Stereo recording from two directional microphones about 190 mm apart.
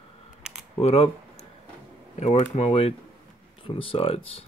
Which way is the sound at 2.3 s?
30° left (ahead or behind).